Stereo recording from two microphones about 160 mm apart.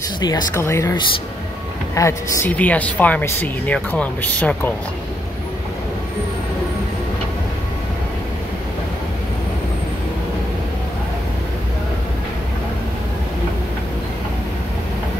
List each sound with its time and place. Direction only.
0.2 s speech: 20° left (ahead or behind)
2.0 s speech: 20° left (ahead or behind)